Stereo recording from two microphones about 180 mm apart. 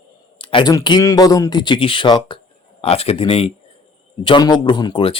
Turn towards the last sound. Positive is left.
turn(degrees=30)  # may be behind; listen again after turning